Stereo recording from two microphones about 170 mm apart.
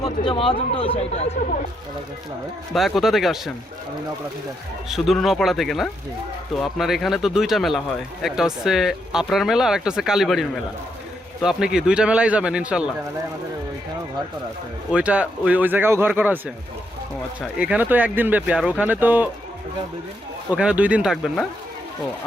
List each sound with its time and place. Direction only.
0.3 s speech: 30° left (ahead or behind)
2.7 s a man's voice: centre (ahead or behind)
4.9 s a man's voice: centre (ahead or behind)
14.9 s speech: 5° right (ahead or behind)
17.6 s speech: 10° right (ahead or behind)
20.5 s speech: 5° right (ahead or behind)